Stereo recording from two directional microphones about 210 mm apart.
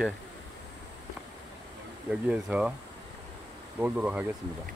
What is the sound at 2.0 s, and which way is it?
Speech, 5° right (ahead or behind).